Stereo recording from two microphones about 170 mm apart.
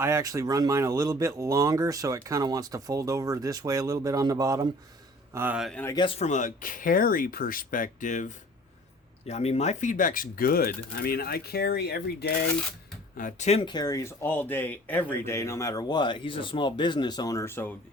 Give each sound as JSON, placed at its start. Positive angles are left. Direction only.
{"t": 0.0, "sound": "speech", "side_deg": -15}
{"t": 5.5, "sound": "speech", "side_deg": 0}
{"t": 5.8, "sound": "speech", "side_deg": 20}
{"t": 6.1, "sound": "speech", "side_deg": 40}
{"t": 13.1, "sound": "speech", "side_deg": 50}
{"t": 13.5, "sound": "speech", "side_deg": 30}